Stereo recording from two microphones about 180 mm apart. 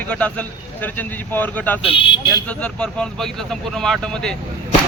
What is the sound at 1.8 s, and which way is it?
Speech, 30° left (ahead or behind).